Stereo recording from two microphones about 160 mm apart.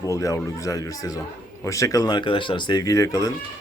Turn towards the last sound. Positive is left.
turn(degrees=20)  # may be behind; listen again after turning